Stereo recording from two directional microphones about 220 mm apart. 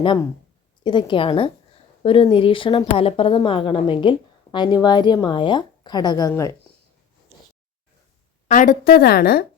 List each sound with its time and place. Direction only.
0.9 s a woman's voice: 20° left (ahead or behind)
8.4 s a woman's voice: 35° left (ahead or behind)